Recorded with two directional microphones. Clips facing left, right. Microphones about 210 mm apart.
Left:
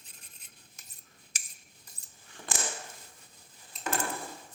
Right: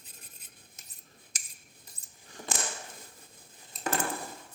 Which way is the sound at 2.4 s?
40° right (ahead or behind).